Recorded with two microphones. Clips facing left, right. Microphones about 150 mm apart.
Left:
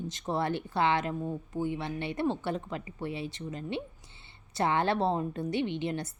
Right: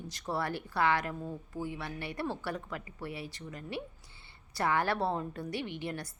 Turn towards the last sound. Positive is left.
turn(degrees=20)  # may be behind; listen again after turning